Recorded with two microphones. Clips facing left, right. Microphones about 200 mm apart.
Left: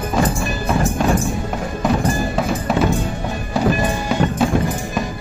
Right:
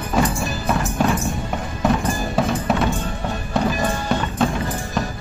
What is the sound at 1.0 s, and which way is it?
Music, 5° right (ahead or behind).